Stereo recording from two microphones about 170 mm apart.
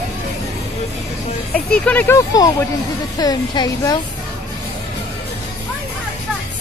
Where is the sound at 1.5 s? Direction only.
10° left (ahead or behind).